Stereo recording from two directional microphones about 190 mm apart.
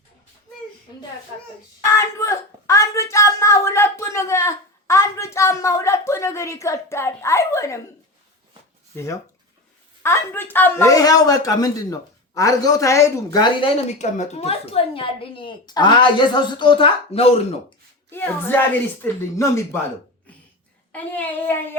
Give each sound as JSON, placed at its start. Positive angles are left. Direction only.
{"t": 1.9, "sound": "a sound", "side_deg": 15}
{"t": 10.0, "sound": "speech", "side_deg": 10}
{"t": 18.1, "sound": "speech", "side_deg": 10}
{"t": 20.9, "sound": "speech", "side_deg": 10}